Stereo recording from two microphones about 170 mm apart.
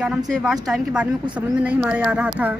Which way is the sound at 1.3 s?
10° right (ahead or behind).